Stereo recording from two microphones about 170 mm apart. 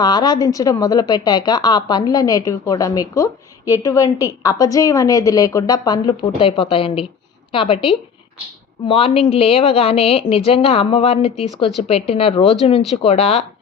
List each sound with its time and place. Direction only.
0.0 s a woman's voice: 25° left (ahead or behind)